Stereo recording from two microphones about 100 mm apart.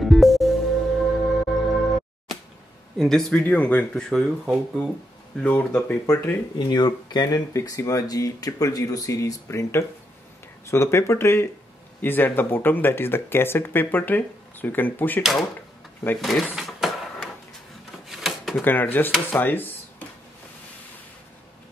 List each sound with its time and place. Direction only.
0.0 s music: centre (ahead or behind)
3.0 s speech: 5° left (ahead or behind)
3.3 s speech: 15° left (ahead or behind)
5.4 s speech: 20° left (ahead or behind)
6.6 s speech: 45° left (ahead or behind)
7.5 s speech: 35° left (ahead or behind); by 15.2 s 20° left (ahead or behind)
16.2 s speech: centre (ahead or behind)
18.0 s a sound: centre (ahead or behind)
18.6 s speech: 20° left (ahead or behind)